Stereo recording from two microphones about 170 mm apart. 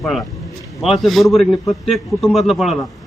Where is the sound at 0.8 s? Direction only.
Centre (ahead or behind).